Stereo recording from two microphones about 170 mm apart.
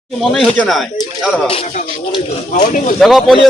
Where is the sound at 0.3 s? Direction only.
5° left (ahead or behind).